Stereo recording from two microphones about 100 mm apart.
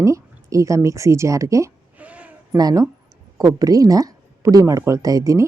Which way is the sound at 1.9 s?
15° right (ahead or behind).